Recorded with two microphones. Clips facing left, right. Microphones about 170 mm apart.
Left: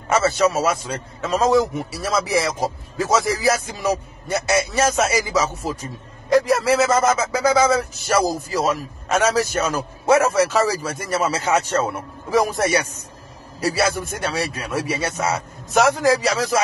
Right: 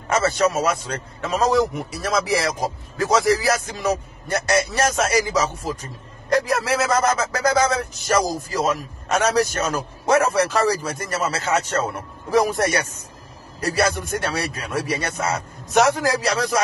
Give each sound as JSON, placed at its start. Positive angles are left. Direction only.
{"t": 0.1, "sound": "a man's voice", "side_deg": 5}